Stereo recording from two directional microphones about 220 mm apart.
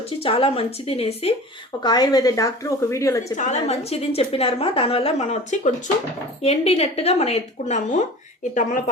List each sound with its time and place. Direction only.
0.2 s a woman's voice: 25° left (ahead or behind)
3.3 s a woman's voice: 30° left (ahead or behind)